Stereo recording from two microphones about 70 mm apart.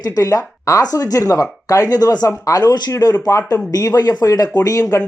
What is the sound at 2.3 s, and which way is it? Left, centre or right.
Speech, left.